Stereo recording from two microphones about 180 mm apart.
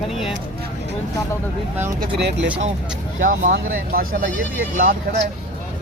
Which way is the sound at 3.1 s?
45° right (ahead or behind).